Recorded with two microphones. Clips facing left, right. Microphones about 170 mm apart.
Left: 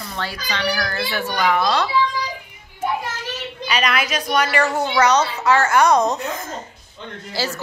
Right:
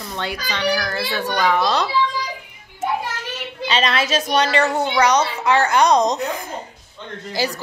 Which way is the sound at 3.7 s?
25° right (ahead or behind).